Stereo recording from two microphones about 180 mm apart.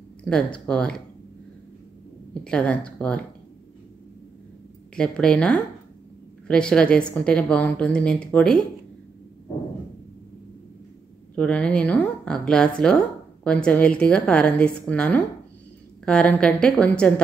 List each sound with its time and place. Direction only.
0.2 s a woman's voice: 5° left (ahead or behind)
2.4 s a woman's voice: 5° left (ahead or behind)
4.9 s a woman's voice: 5° left (ahead or behind)
11.3 s a woman's voice: 5° left (ahead or behind)